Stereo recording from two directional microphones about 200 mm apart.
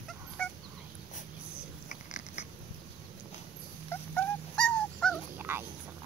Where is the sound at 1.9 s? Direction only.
35° left (ahead or behind).